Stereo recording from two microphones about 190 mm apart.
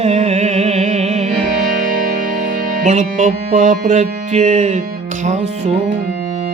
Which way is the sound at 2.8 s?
40° right (ahead or behind).